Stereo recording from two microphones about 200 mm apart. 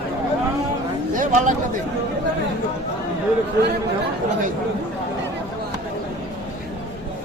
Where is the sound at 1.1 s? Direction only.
40° right (ahead or behind).